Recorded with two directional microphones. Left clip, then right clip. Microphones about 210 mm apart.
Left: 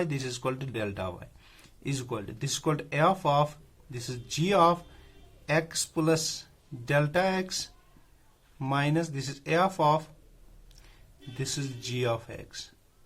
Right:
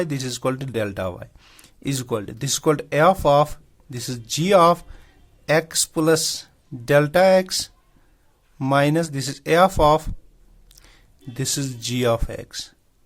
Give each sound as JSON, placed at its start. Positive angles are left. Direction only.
{"t": 0.0, "sound": "speech", "side_deg": -40}
{"t": 10.7, "sound": "a sound", "side_deg": -45}
{"t": 11.3, "sound": "speech", "side_deg": -45}